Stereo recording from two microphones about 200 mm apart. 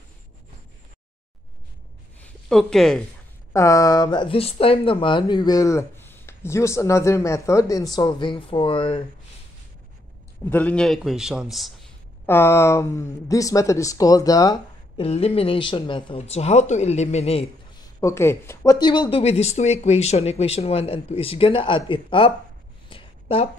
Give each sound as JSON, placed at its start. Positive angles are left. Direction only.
{"t": 2.1, "sound": "a sound", "side_deg": 0}
{"t": 3.5, "sound": "speech", "side_deg": 15}
{"t": 10.4, "sound": "a man's voice", "side_deg": 10}
{"t": 12.3, "sound": "speech", "side_deg": 10}
{"t": 15.0, "sound": "speech", "side_deg": 30}
{"t": 18.0, "sound": "speech", "side_deg": 15}
{"t": 22.8, "sound": "a sound", "side_deg": 25}